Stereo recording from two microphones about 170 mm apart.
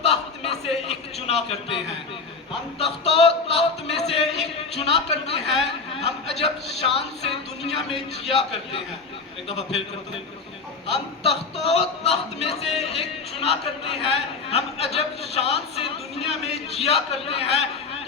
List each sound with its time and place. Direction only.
0.0 s a sound: 35° left (ahead or behind)
2.7 s a man's voice: 35° left (ahead or behind)
5.6 s a sound: 40° left (ahead or behind)
6.4 s a man's voice: 35° left (ahead or behind)
9.5 s a man's voice: 40° left (ahead or behind)
11.6 s a man's voice: 35° left (ahead or behind)